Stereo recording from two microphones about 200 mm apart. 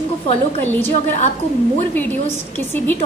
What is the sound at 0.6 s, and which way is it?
Speech, 10° left (ahead or behind).